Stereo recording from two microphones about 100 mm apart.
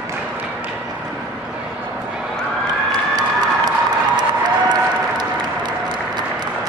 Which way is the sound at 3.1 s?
45° right (ahead or behind).